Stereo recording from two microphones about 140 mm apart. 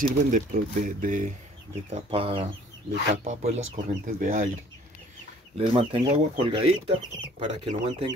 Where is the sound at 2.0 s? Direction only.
45° right (ahead or behind).